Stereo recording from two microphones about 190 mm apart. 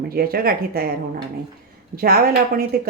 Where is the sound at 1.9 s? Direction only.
50° right (ahead or behind).